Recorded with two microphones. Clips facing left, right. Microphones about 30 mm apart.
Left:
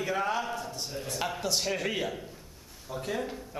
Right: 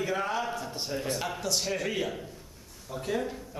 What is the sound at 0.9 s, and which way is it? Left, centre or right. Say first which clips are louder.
Speech: right 5 dB; centre.